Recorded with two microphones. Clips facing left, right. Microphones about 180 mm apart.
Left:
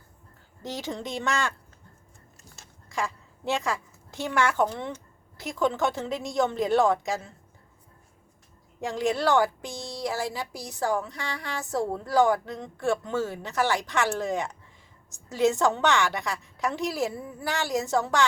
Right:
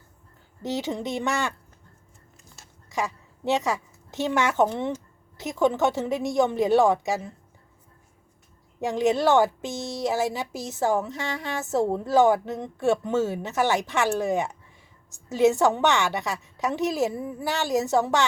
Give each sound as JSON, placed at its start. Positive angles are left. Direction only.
{"t": 0.8, "sound": "a woman's voice", "side_deg": -15}
{"t": 2.9, "sound": "a woman's voice", "side_deg": -20}
{"t": 8.8, "sound": "a woman's voice", "side_deg": -15}
{"t": 9.7, "sound": "speech", "side_deg": 15}
{"t": 10.1, "sound": "a woman's voice", "side_deg": -20}